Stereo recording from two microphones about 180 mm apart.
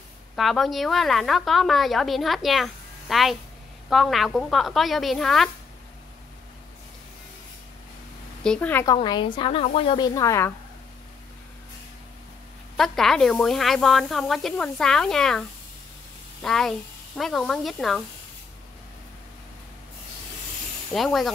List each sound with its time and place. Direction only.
0.4 s a woman's voice: centre (ahead or behind)
8.5 s a woman's voice: 10° left (ahead or behind)
8.9 s a woman's voice: 25° left (ahead or behind)
12.7 s a woman's voice: centre (ahead or behind)
16.4 s a woman's voice: 5° left (ahead or behind)
20.9 s a woman's voice: centre (ahead or behind)